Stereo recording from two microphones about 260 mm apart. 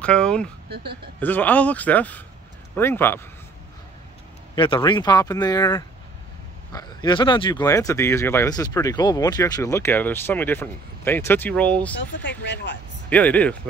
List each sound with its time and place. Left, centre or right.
0.0 s speech: centre
4.6 s speech: centre
12.0 s speech: left
13.1 s speech: centre